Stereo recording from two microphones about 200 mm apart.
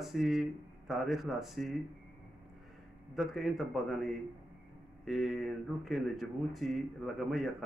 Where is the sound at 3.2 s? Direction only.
Centre (ahead or behind).